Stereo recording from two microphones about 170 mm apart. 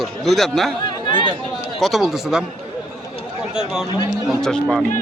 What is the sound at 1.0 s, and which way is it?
Speech, 30° left (ahead or behind).